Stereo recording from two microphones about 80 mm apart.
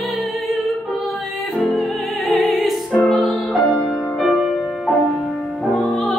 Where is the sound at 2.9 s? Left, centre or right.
Centre.